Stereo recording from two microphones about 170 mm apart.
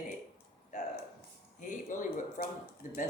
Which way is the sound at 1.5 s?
50° left (ahead or behind).